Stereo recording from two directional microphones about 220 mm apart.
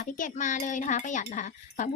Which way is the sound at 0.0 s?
35° left (ahead or behind).